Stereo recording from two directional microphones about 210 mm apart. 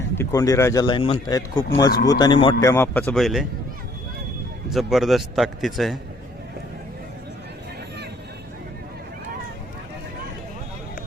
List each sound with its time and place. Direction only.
0.2 s speech: 15° left (ahead or behind)
4.7 s a man's voice: centre (ahead or behind)